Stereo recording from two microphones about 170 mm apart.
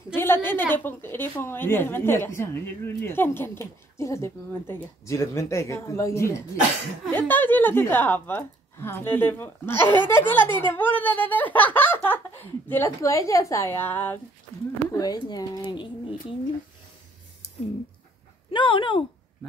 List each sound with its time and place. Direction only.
0.1 s a woman's voice: 15° left (ahead or behind)
14.9 s speech: 20° left (ahead or behind)
18.5 s speech: 30° left (ahead or behind)